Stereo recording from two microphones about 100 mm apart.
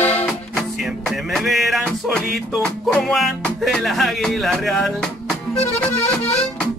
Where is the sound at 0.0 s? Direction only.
20° left (ahead or behind).